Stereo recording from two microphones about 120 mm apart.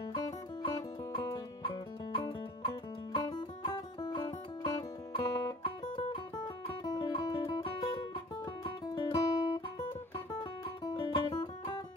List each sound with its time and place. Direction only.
0.0 s music: 40° left (ahead or behind)
7.6 s music: 45° left (ahead or behind)
8.6 s guitar: 35° left (ahead or behind)
10.4 s music: 35° left (ahead or behind)